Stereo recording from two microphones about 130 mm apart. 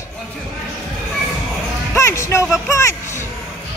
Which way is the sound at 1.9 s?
20° left (ahead or behind).